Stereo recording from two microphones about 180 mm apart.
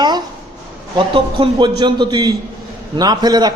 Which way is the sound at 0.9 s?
25° right (ahead or behind).